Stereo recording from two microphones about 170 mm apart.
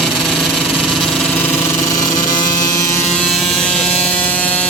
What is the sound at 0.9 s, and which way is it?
Engine, 5° left (ahead or behind).